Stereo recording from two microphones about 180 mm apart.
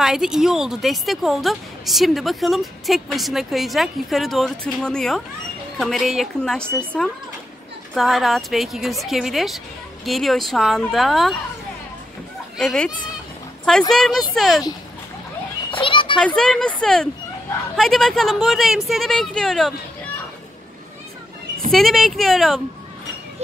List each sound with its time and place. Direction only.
0.0 s a woman's voice: centre (ahead or behind)
7.9 s a woman's voice: centre (ahead or behind)
12.5 s a woman's voice: 5° left (ahead or behind)
15.7 s children playing: 30° left (ahead or behind)
16.2 s a woman's voice: 5° left (ahead or behind)
21.7 s a woman's voice: centre (ahead or behind)